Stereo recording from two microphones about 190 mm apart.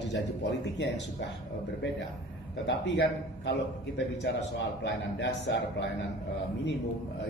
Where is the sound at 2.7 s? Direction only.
65° left (ahead or behind).